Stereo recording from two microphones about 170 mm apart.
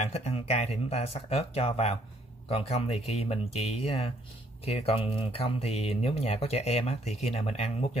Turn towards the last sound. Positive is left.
turn(degrees=35)  # may be behind; listen again after turning